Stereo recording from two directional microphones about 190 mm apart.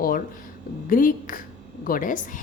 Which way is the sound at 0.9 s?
45° left (ahead or behind).